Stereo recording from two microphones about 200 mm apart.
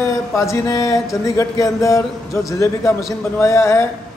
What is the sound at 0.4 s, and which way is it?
A man's voice, 15° left (ahead or behind).